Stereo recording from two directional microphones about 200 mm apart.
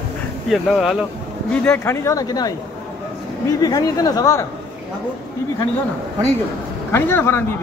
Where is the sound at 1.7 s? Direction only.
15° left (ahead or behind).